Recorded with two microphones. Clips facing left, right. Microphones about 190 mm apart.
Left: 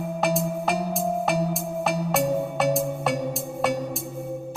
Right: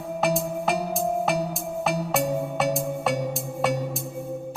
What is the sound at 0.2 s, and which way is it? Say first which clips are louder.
Music: right 1 dB; centre (ahead or behind).